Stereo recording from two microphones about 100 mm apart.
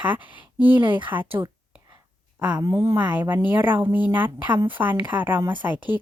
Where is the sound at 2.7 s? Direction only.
25° right (ahead or behind).